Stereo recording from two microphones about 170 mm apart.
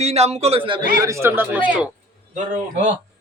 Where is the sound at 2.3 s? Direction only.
45° right (ahead or behind).